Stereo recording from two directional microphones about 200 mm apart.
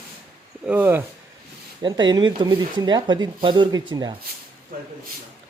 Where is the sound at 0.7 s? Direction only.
10° right (ahead or behind).